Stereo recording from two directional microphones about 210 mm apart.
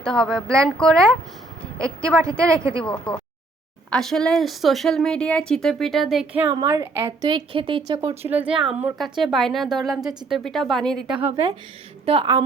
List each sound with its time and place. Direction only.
0.0 s speech: 5° left (ahead or behind)
2.3 s speech: 5° left (ahead or behind)
2.8 s speech: 25° left (ahead or behind)
3.8 s speech: centre (ahead or behind)
6.5 s a woman's voice: 15° right (ahead or behind)
7.3 s a woman's voice: 25° right (ahead or behind)
8.2 s speech: 10° right (ahead or behind)
12.0 s a woman's voice: 25° right (ahead or behind)